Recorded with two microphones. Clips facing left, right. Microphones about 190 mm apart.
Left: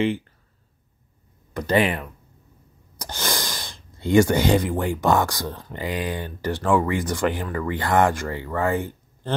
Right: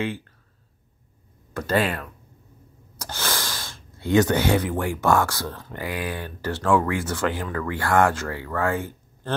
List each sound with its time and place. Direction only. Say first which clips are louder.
1.5 s speech: left 2 dB; 15° left (ahead or behind)